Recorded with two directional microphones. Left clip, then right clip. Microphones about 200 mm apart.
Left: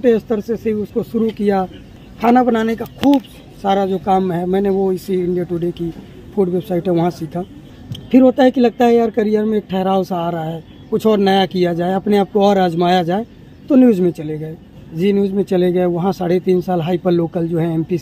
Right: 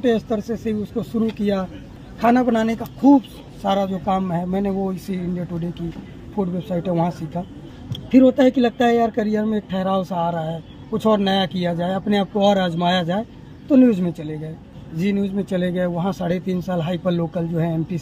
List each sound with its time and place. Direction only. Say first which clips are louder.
0.0 s speech: left 5 dB; 50° left (ahead or behind)
6.3 s speech: left 7 dB; 45° left (ahead or behind)